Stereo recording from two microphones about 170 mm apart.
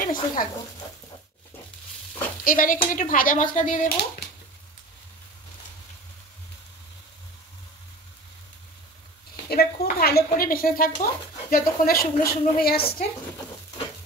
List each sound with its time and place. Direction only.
0.0 s speech: 55° left (ahead or behind)
2.4 s a woman's voice: 55° left (ahead or behind)
9.5 s speech: 65° left (ahead or behind)